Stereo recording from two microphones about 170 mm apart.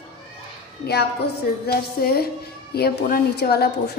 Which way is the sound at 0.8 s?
75° left (ahead or behind).